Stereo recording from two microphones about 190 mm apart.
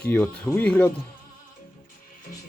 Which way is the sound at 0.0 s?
10° left (ahead or behind).